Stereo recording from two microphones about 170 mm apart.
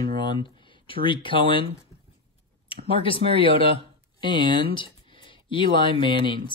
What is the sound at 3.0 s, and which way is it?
Speech, 30° left (ahead or behind).